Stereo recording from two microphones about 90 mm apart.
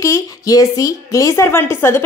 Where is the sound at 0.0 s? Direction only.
40° left (ahead or behind).